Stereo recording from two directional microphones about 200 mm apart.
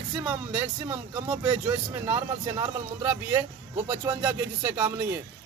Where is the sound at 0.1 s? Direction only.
5° right (ahead or behind).